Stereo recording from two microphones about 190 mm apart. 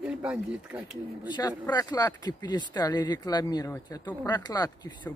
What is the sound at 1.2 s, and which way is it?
Speech, 20° left (ahead or behind).